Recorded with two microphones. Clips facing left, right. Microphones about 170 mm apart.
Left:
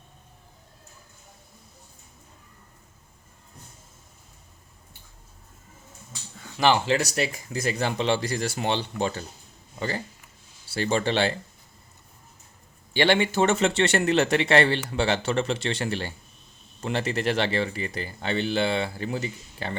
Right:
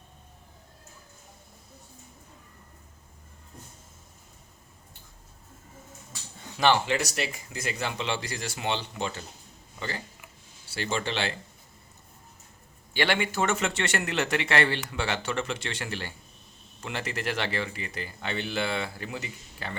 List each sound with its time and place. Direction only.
6.8 s a man's voice: 40° left (ahead or behind)
10.8 s a man's voice: 40° left (ahead or behind)
12.9 s a man's voice: 30° left (ahead or behind)